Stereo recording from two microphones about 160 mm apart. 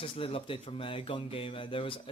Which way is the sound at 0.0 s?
35° left (ahead or behind).